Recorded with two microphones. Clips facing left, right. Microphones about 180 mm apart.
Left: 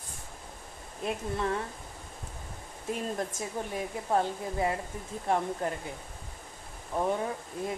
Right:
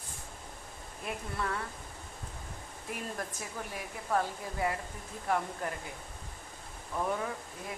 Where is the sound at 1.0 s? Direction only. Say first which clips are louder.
Left 6 dB; 25° left (ahead or behind).